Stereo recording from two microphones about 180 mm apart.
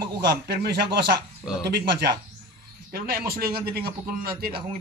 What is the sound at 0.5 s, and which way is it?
Speech, 65° right (ahead or behind).